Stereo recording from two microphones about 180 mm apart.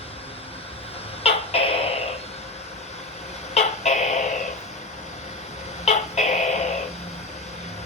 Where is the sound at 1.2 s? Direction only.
35° left (ahead or behind).